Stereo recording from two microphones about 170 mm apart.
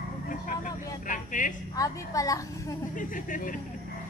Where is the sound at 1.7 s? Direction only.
20° left (ahead or behind).